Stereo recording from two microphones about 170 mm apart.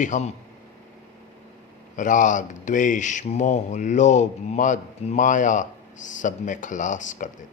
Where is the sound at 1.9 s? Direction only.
50° left (ahead or behind).